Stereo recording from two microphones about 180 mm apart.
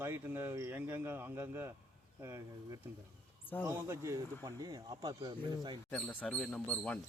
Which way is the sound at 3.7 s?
15° right (ahead or behind).